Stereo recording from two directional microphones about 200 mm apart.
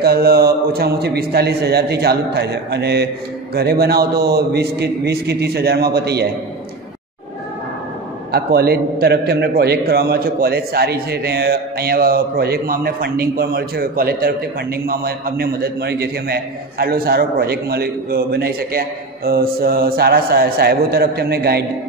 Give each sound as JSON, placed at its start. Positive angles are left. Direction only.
{"t": 0.0, "sound": "a man's voice", "side_deg": -50}
{"t": 8.3, "sound": "a man's voice", "side_deg": -50}